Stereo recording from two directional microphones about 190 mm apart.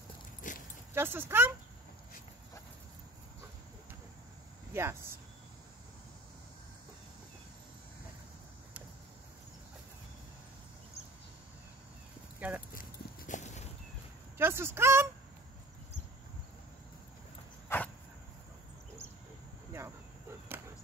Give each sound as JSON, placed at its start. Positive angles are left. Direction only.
{"t": 0.5, "sound": "dog", "side_deg": 40}
{"t": 0.9, "sound": "speech", "side_deg": -10}
{"t": 4.7, "sound": "speech", "side_deg": -15}
{"t": 12.4, "sound": "speech", "side_deg": -10}
{"t": 13.3, "sound": "cat", "side_deg": 40}
{"t": 14.4, "sound": "speech", "side_deg": -10}
{"t": 17.6, "sound": "a sound", "side_deg": 10}
{"t": 19.7, "sound": "arrow", "side_deg": -15}